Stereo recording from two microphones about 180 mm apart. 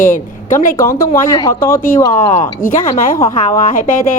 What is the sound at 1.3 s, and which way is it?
Speech, 15° left (ahead or behind).